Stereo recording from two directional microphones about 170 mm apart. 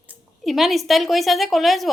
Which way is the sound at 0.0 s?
5° right (ahead or behind).